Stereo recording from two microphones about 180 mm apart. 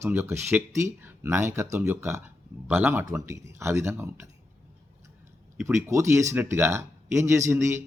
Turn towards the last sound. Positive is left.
turn(degrees=-15)  # may be behind; listen again after turning